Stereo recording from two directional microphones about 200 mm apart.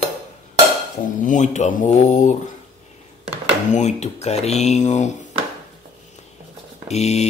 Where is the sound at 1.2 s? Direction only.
40° left (ahead or behind).